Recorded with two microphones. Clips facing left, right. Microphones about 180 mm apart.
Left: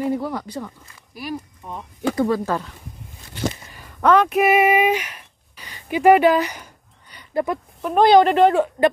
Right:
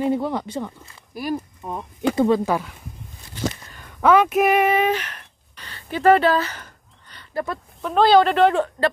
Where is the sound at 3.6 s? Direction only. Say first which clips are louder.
Left 1 dB; 5° left (ahead or behind).